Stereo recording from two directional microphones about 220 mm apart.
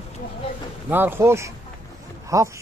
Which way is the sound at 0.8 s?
10° right (ahead or behind).